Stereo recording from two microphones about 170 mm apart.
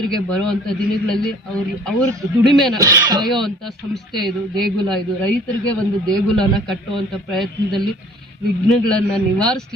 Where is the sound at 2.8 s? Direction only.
20° right (ahead or behind).